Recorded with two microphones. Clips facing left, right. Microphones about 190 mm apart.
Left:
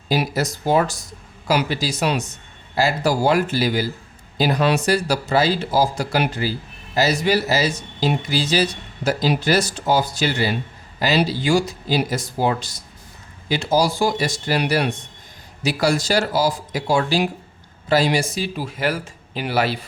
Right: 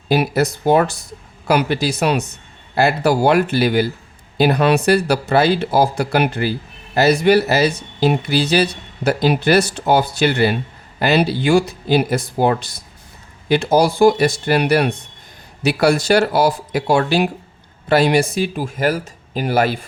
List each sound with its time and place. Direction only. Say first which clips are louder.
0.1 s speech: right 5 dB; 60° right (ahead or behind)